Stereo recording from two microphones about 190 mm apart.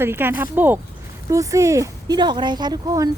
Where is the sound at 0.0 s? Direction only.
10° right (ahead or behind).